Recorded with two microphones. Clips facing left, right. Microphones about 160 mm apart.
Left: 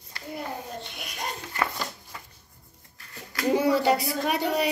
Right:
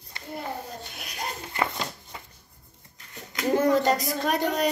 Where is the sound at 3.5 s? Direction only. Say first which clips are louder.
Right 1 dB; 10° left (ahead or behind).